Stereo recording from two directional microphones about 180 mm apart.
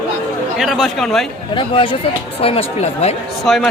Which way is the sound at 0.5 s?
Centre (ahead or behind).